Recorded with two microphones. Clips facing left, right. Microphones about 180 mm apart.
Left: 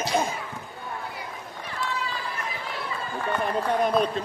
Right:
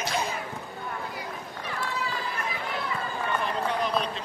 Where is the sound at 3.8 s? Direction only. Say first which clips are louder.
Left 5 dB; 50° left (ahead or behind).